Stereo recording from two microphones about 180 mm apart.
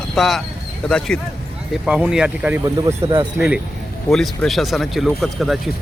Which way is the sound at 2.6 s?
20° right (ahead or behind).